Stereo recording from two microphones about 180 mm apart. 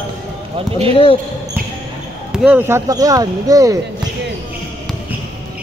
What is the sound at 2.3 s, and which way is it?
Speech, 5° right (ahead or behind).